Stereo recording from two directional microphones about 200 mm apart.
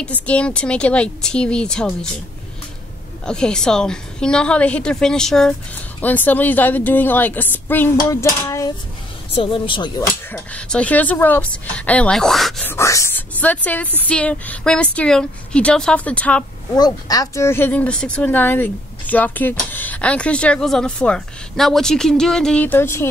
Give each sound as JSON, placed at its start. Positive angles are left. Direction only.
{"t": 0.0, "sound": "speech", "side_deg": 5}
{"t": 3.3, "sound": "speech", "side_deg": 5}
{"t": 9.3, "sound": "a woman's voice", "side_deg": 25}
{"t": 10.3, "sound": "speech", "side_deg": 5}
{"t": 12.7, "sound": "a sound", "side_deg": 15}
{"t": 14.0, "sound": "speech", "side_deg": 5}
{"t": 16.7, "sound": "speech", "side_deg": 20}